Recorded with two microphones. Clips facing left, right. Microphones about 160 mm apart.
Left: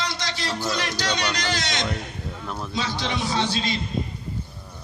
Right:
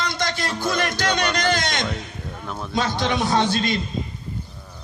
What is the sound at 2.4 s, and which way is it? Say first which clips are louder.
Speech: right 1 dB; centre (ahead or behind).